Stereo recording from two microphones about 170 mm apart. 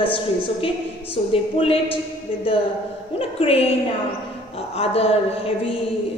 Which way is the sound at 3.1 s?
35° left (ahead or behind).